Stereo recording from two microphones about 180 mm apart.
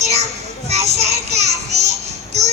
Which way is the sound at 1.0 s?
35° right (ahead or behind).